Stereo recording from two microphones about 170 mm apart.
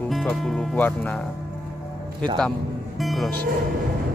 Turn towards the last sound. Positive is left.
turn(degrees=0)  # may be behind; listen again after turning